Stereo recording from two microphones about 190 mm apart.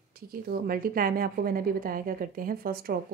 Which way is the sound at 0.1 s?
50° right (ahead or behind).